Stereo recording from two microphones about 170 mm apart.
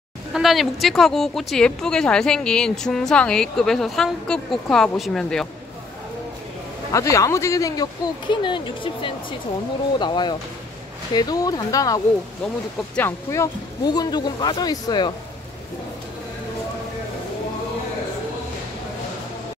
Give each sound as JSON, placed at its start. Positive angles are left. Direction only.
{"t": 0.3, "sound": "speech", "side_deg": 0}
{"t": 6.9, "sound": "speech", "side_deg": 20}